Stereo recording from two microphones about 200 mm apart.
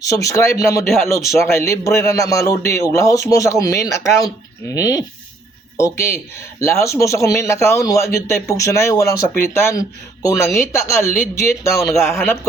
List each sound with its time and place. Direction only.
0.0 s a man's voice: 15° left (ahead or behind)